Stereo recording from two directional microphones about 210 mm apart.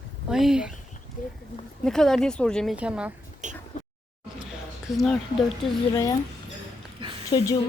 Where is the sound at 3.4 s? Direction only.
35° right (ahead or behind).